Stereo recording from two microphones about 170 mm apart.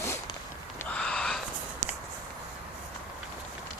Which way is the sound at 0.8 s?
5° left (ahead or behind).